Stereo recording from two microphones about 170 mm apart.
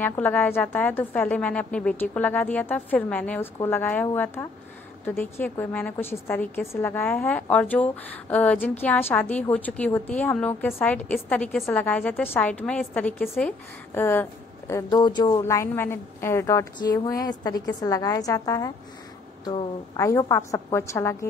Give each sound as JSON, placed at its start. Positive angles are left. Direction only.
{"t": 0.2, "sound": "a woman's voice", "side_deg": 10}